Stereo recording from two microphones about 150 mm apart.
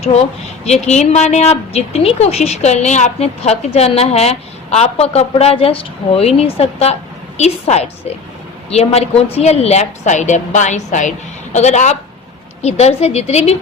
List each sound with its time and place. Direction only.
0.6 s a woman's voice: 50° left (ahead or behind)